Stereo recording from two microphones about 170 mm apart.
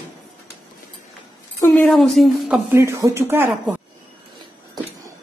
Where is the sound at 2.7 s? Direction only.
15° right (ahead or behind).